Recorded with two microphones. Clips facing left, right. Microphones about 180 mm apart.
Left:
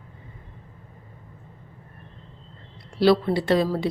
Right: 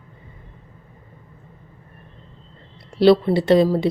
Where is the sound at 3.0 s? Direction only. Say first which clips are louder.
Right 5 dB; 25° right (ahead or behind).